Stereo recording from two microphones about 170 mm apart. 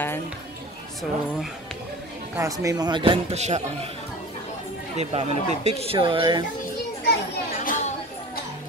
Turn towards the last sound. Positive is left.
turn(degrees=50)  # may be behind; listen again after turning